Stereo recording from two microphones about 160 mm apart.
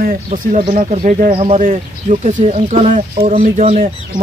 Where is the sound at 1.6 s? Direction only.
50° right (ahead or behind).